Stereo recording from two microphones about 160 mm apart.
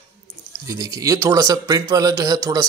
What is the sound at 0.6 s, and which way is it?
Speech, 20° right (ahead or behind).